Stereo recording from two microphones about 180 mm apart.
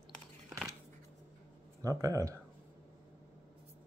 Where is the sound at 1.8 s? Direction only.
20° right (ahead or behind).